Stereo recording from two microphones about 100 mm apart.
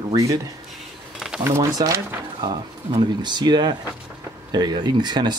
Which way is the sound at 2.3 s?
45° right (ahead or behind).